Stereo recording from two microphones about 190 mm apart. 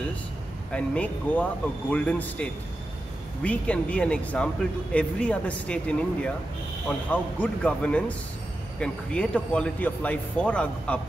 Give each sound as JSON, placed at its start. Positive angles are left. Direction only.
{"t": 0.7, "sound": "speech", "side_deg": 5}